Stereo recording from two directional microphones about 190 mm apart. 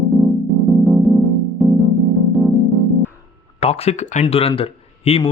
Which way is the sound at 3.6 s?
30° left (ahead or behind).